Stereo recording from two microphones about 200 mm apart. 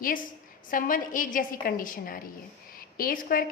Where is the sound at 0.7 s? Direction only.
40° left (ahead or behind).